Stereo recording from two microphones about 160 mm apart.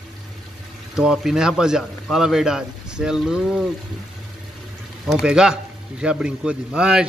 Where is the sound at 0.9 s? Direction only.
5° right (ahead or behind).